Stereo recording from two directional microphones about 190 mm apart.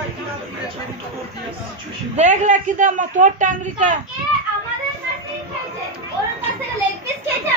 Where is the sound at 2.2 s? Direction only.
40° right (ahead or behind).